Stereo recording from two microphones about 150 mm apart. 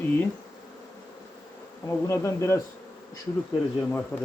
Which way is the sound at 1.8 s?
20° left (ahead or behind).